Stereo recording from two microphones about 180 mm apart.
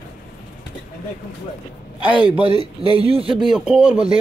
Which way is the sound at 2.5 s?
30° right (ahead or behind).